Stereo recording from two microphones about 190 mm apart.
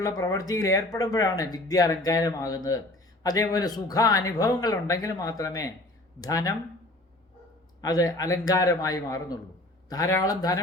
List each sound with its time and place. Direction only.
0.0 s speech: 20° left (ahead or behind)
7.8 s speech: 20° left (ahead or behind)